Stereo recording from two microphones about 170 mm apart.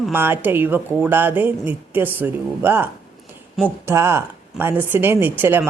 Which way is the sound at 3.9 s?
15° right (ahead or behind).